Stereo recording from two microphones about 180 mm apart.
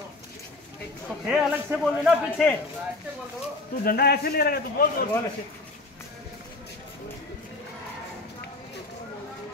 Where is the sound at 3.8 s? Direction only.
60° left (ahead or behind).